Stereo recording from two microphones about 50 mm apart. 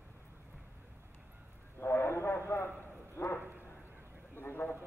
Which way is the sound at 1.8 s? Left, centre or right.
Left.